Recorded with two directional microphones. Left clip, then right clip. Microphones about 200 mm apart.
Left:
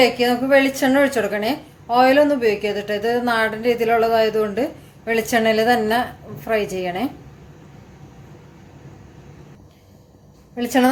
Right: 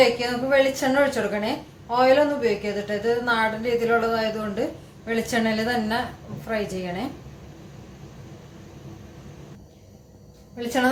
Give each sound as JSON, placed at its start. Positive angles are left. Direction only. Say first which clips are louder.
{"t": 0.2, "sound": "a woman's voice", "louder": "left 5 dB", "side_deg": 45}